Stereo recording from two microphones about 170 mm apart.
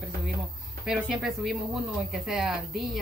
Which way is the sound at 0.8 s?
5° right (ahead or behind).